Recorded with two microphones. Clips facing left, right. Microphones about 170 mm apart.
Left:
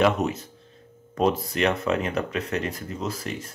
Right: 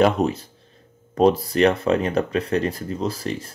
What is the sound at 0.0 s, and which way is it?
Speech, 30° right (ahead or behind).